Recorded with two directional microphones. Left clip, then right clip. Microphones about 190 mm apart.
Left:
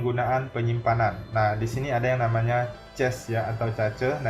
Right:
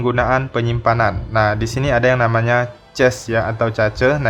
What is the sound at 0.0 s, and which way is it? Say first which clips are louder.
A man's voice: right 9 dB; 40° right (ahead or behind).